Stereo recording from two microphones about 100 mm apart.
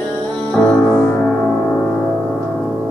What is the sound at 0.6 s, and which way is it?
Music, 10° left (ahead or behind).